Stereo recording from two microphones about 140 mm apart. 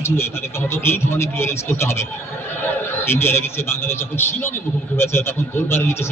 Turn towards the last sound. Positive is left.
turn(degrees=15)  # may be behind; listen again after turning